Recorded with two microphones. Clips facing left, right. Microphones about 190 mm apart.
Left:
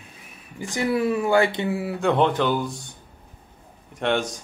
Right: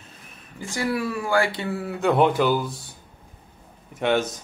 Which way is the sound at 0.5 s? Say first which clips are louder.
Left 3 dB; 20° left (ahead or behind).